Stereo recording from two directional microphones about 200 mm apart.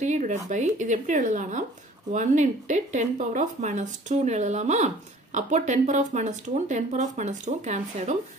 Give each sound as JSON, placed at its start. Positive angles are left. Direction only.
{"t": 0.0, "sound": "speech", "side_deg": -35}